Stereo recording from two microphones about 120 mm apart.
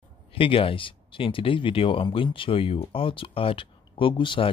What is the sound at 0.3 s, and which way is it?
Speech, 50° left (ahead or behind).